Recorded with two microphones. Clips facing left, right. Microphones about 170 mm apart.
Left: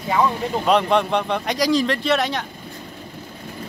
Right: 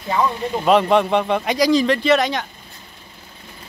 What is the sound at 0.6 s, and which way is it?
Speech, centre (ahead or behind).